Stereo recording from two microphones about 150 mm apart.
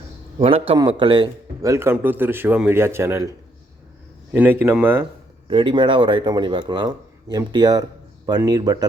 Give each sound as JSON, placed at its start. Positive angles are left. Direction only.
{"t": 0.3, "sound": "a man's voice", "side_deg": -40}
{"t": 5.5, "sound": "speech", "side_deg": -35}